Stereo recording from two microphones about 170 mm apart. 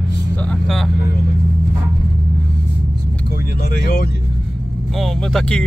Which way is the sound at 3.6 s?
60° left (ahead or behind).